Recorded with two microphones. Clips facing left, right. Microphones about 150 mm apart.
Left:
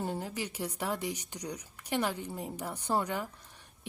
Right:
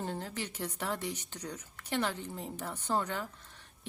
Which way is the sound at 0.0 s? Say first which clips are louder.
Left 2 dB; 10° left (ahead or behind).